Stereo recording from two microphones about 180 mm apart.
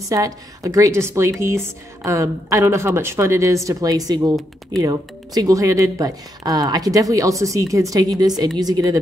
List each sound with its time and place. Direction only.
0.1 s speech: 20° right (ahead or behind)